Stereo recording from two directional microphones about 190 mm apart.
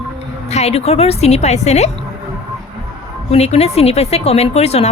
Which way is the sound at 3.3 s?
35° left (ahead or behind).